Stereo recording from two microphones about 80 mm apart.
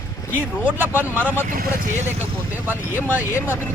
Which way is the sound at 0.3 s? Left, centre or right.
Right.